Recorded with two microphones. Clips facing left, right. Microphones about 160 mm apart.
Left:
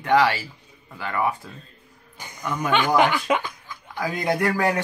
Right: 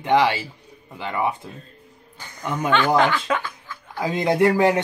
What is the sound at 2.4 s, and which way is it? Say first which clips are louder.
Speech: right 2 dB; 20° right (ahead or behind).